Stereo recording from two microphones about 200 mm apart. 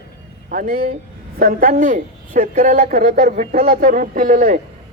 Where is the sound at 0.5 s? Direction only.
45° right (ahead or behind).